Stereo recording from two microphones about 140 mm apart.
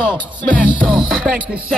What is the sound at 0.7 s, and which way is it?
Music, 35° right (ahead or behind).